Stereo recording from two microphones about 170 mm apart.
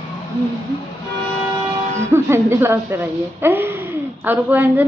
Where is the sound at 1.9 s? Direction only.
15° right (ahead or behind).